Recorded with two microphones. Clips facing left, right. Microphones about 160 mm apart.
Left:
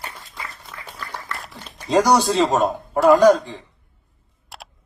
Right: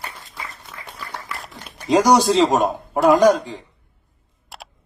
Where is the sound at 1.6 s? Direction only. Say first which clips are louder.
Right 2 dB; 15° right (ahead or behind).